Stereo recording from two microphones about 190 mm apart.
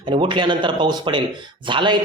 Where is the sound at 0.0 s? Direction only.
25° right (ahead or behind).